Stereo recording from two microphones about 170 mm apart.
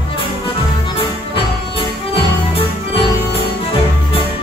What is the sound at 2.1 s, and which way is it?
Music, 35° left (ahead or behind).